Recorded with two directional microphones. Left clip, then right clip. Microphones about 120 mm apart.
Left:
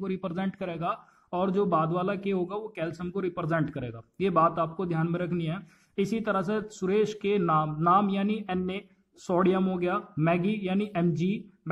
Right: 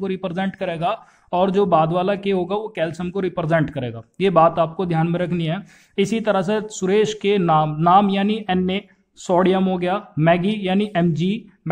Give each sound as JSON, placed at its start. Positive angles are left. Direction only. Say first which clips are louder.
{"t": 0.0, "sound": "a man's voice", "louder": "right 9 dB", "side_deg": -20}